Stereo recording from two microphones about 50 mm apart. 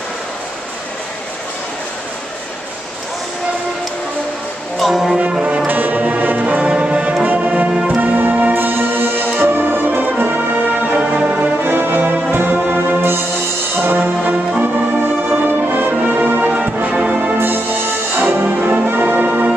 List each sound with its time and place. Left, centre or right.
4.7 s music: centre
5.7 s music: right
11.6 s music: right